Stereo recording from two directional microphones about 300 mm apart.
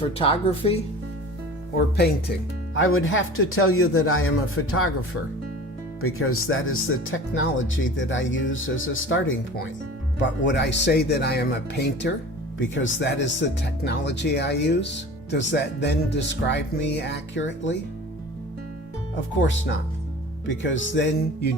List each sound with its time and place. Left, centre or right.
0.2 s speech: centre
2.7 s speech: left
6.0 s speech: left
20.5 s speech: left